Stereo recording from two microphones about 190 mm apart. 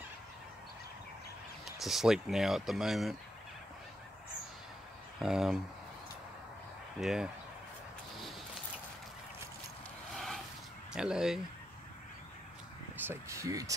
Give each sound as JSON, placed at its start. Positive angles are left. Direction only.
{"t": 1.8, "sound": "speech", "side_deg": 0}
{"t": 5.2, "sound": "speech", "side_deg": 0}
{"t": 7.0, "sound": "speech", "side_deg": 0}
{"t": 10.1, "sound": "a sound", "side_deg": 0}
{"t": 10.9, "sound": "speech", "side_deg": -5}
{"t": 12.9, "sound": "speech", "side_deg": -10}